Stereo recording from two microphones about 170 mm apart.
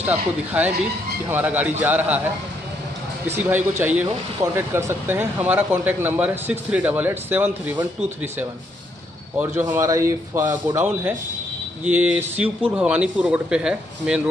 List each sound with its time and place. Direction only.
0.5 s speech: 10° right (ahead or behind)
3.3 s speech: 10° right (ahead or behind)